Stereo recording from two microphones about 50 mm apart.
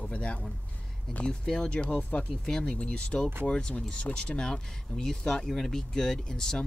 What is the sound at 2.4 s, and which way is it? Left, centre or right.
Speech, centre.